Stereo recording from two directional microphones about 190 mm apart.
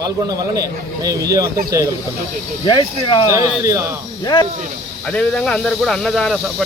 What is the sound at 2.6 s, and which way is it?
Speech, 25° left (ahead or behind).